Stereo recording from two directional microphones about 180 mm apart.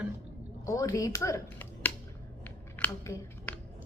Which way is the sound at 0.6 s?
20° left (ahead or behind).